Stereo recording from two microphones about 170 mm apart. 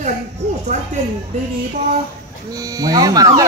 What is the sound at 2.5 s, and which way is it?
Speech, 20° right (ahead or behind).